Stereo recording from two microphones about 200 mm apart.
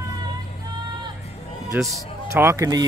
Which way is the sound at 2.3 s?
15° right (ahead or behind).